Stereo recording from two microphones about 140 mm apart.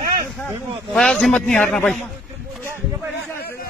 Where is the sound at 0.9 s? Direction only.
Centre (ahead or behind).